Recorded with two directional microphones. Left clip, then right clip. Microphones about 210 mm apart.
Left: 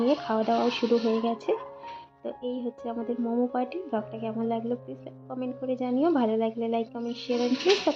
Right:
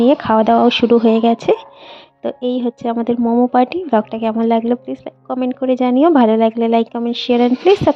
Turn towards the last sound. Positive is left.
turn(degrees=-50)  # may be behind; listen again after turning